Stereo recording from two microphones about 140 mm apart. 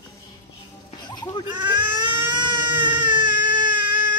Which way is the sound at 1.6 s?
35° right (ahead or behind).